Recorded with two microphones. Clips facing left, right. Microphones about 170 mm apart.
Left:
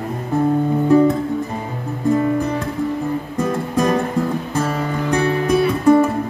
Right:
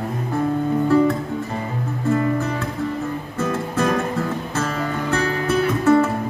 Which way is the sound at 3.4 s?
15° left (ahead or behind).